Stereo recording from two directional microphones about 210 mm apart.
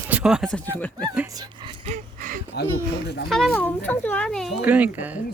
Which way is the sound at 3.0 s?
50° left (ahead or behind).